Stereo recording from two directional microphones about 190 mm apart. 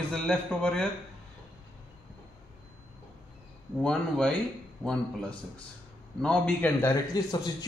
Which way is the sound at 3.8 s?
5° left (ahead or behind).